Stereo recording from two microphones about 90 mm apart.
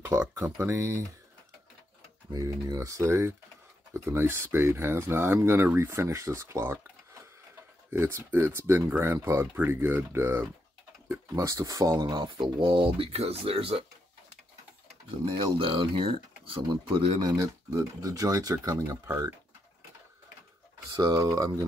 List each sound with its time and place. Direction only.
0.2 s speech: 20° right (ahead or behind)
0.6 s speech: 35° right (ahead or behind)
2.3 s speech: 40° right (ahead or behind)
7.9 s speech: 30° right (ahead or behind)
12.0 s speech: 55° right (ahead or behind); by 13.8 s 90° right
15.4 s speech: 70° right (ahead or behind)
16.9 s speech: 50° right (ahead or behind)
20.9 s speech: 45° right (ahead or behind)